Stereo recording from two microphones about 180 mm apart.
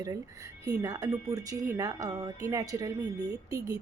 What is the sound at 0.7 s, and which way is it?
A woman's voice, 20° right (ahead or behind).